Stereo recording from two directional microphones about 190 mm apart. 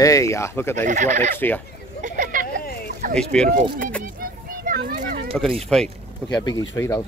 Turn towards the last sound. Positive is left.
turn(degrees=15)  # may be behind; listen again after turning